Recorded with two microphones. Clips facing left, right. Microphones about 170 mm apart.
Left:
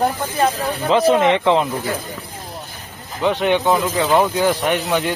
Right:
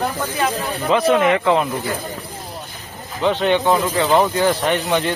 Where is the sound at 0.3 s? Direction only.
30° left (ahead or behind).